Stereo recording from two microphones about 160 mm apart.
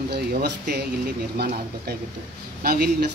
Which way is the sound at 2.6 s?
75° right (ahead or behind).